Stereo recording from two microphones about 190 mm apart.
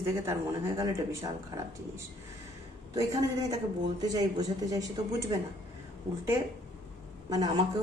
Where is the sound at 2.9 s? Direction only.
20° right (ahead or behind).